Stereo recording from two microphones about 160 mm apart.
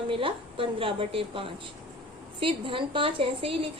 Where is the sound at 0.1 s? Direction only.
35° right (ahead or behind).